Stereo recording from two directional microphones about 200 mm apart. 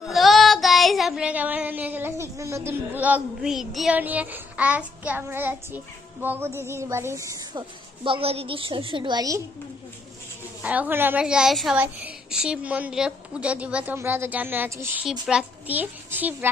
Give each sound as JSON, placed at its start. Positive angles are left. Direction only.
{"t": 0.0, "sound": "child singing", "side_deg": 0}
{"t": 6.2, "sound": "a child's voice", "side_deg": -10}
{"t": 8.0, "sound": "a woman's voice", "side_deg": -25}
{"t": 10.6, "sound": "a child's voice", "side_deg": -10}